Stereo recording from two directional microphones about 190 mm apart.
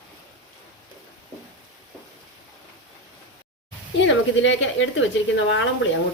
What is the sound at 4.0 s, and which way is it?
Speech, 75° left (ahead or behind).